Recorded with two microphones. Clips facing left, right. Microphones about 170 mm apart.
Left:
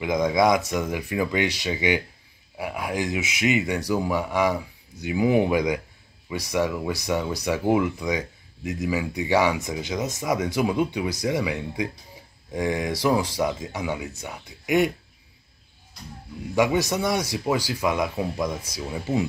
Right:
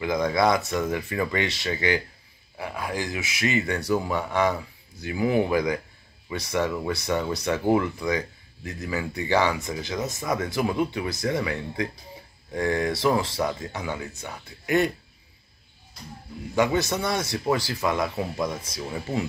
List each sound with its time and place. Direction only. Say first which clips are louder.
0.0 s speech: left 2 dB; 15° left (ahead or behind)
16.5 s speech: left 1 dB; 10° left (ahead or behind)